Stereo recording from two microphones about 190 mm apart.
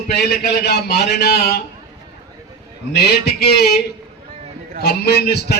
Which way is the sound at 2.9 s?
60° left (ahead or behind).